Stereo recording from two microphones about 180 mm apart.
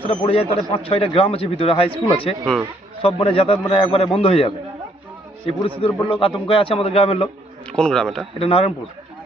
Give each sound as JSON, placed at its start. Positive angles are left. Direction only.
{"t": 0.0, "sound": "a man's voice", "side_deg": 35}
{"t": 5.6, "sound": "a man's voice", "side_deg": 30}
{"t": 7.7, "sound": "speech", "side_deg": 5}
{"t": 8.4, "sound": "a man's voice", "side_deg": 30}